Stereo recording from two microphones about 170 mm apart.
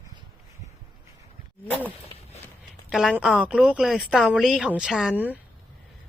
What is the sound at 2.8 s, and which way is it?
A woman's voice, centre (ahead or behind).